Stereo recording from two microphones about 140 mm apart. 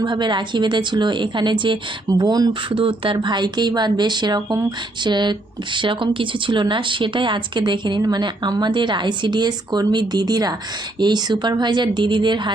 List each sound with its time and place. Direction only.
0.0 s speech: 30° right (ahead or behind)
2.7 s speech: 40° right (ahead or behind)